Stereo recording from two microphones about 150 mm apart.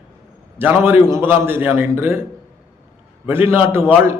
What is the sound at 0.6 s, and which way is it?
A man's voice, 15° right (ahead or behind).